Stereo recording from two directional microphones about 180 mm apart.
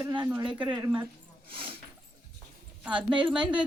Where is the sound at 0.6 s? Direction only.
10° right (ahead or behind).